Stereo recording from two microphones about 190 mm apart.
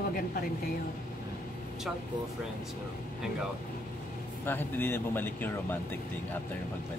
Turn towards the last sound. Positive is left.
turn(degrees=10)  # may be behind; listen again after turning